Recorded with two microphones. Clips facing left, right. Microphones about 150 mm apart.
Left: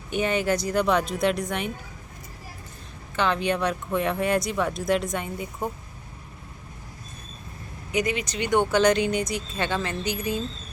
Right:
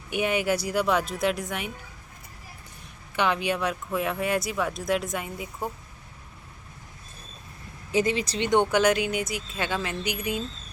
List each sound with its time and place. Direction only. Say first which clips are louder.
0.1 s speech: left 1 dB; 10° right (ahead or behind)
3.2 s speech: left 1 dB; 10° right (ahead or behind)
7.9 s speech: right 2 dB; 30° right (ahead or behind)
8.4 s speech: even; 20° right (ahead or behind)
8.8 s speech: left 2 dB; 5° right (ahead or behind)